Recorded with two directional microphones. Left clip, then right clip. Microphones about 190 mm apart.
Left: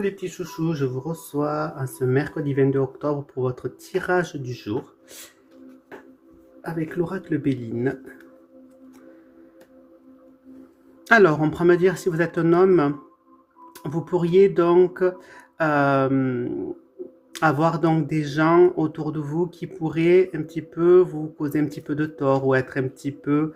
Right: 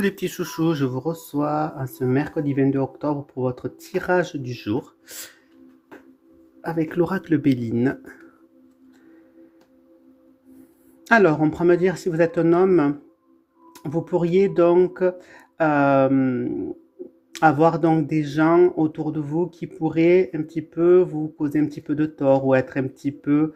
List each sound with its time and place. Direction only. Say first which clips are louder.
0.0 s speech: right 2 dB; 50° right (ahead or behind); by 4.8 s 25° right (ahead or behind)
5.0 s speech: right 4 dB; 40° right (ahead or behind)
6.6 s speech: right 4 dB; 40° right (ahead or behind)
11.0 s speech: even; 20° right (ahead or behind)